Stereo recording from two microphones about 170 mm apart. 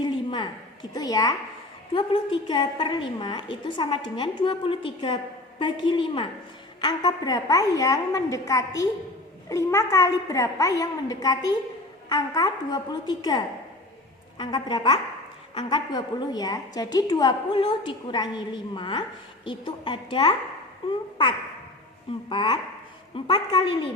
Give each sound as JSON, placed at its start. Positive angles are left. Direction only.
{"t": 0.0, "sound": "a sound", "side_deg": 25}
{"t": 1.9, "sound": "a woman's voice", "side_deg": 30}
{"t": 22.3, "sound": "a woman's voice", "side_deg": 25}